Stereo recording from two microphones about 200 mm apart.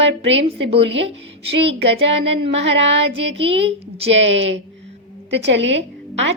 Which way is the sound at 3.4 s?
30° right (ahead or behind).